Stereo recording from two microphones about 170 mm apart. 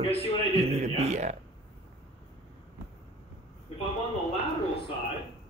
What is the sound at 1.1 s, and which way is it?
Speech, 45° right (ahead or behind).